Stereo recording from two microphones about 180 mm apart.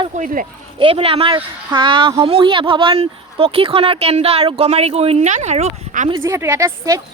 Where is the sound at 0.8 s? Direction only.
30° right (ahead or behind).